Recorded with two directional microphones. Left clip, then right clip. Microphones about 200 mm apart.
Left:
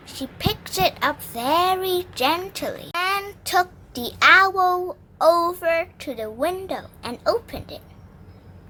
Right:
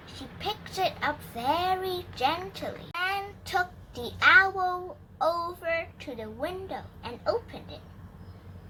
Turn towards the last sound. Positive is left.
turn(degrees=45)  # may be behind; listen again after turning